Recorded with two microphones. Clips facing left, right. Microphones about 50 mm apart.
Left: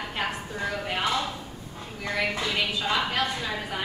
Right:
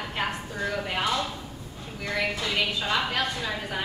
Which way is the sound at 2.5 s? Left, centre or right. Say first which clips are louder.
Even; centre.